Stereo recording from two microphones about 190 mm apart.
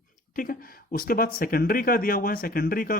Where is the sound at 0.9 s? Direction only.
50° left (ahead or behind).